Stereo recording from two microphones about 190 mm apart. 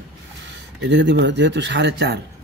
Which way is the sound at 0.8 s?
70° right (ahead or behind).